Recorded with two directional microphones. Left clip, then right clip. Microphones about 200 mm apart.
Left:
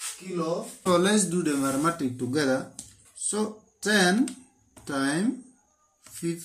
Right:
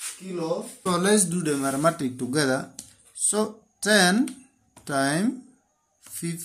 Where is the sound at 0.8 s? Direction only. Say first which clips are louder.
Even; 35° right (ahead or behind).